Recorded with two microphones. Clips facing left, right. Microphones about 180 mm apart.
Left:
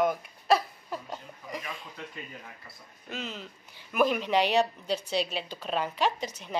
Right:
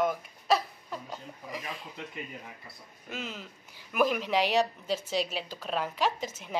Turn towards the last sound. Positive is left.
turn(degrees=-5)  # may be behind; listen again after turning